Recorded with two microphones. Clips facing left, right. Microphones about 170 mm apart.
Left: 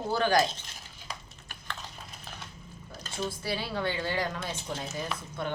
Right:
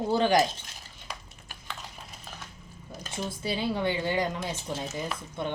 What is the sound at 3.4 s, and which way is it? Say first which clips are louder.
Speech: right 6 dB; 20° right (ahead or behind).